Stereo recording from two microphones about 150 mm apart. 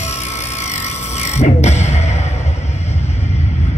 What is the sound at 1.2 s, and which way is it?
Music, 50° left (ahead or behind).